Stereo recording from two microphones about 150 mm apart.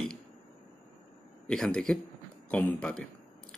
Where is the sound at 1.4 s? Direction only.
5° left (ahead or behind).